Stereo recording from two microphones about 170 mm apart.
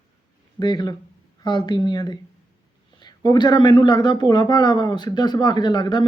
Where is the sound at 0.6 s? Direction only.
25° left (ahead or behind).